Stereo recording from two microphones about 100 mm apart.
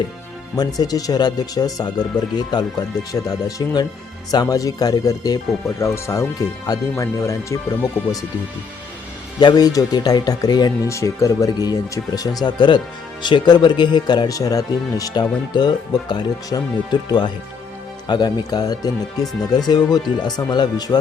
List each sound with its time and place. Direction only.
0.5 s speech: 40° left (ahead or behind)
5.6 s speech: 30° left (ahead or behind)
9.4 s speech: 45° left (ahead or behind)
10.8 s speech: 30° left (ahead or behind)